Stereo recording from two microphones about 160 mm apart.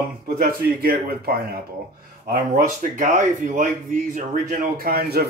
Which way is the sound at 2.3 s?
55° right (ahead or behind).